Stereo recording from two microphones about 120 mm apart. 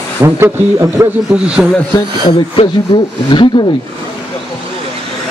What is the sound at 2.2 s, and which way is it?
Speech, 45° left (ahead or behind).